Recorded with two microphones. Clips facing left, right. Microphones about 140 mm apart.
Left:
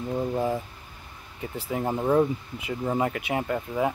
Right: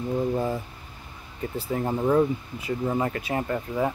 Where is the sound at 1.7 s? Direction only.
10° left (ahead or behind).